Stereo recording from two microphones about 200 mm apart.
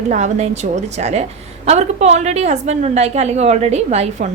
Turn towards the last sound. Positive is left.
turn(degrees=-35)  # may be behind; listen again after turning